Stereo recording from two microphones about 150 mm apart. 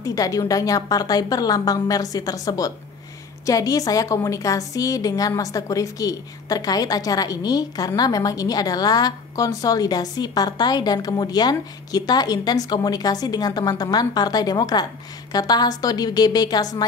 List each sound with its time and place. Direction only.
0.0 s a woman's voice: 20° left (ahead or behind)